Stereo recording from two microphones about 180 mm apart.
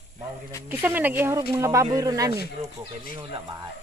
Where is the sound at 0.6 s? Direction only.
10° right (ahead or behind).